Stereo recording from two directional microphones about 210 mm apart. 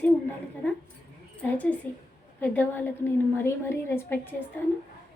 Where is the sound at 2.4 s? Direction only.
10° left (ahead or behind).